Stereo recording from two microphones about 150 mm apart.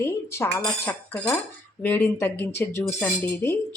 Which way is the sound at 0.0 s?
15° left (ahead or behind).